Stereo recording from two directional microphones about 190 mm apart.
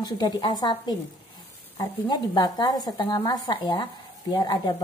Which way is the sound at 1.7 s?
20° left (ahead or behind).